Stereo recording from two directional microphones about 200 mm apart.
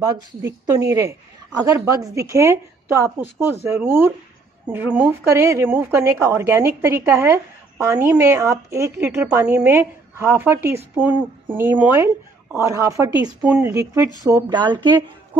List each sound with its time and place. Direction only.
0.0 s a woman's voice: 15° right (ahead or behind)